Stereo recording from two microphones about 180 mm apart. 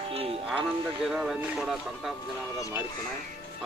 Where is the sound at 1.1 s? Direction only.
5° right (ahead or behind).